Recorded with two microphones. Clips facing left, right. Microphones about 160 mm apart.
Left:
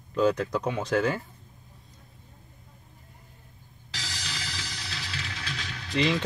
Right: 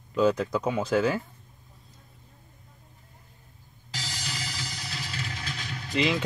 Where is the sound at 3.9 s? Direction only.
50° right (ahead or behind).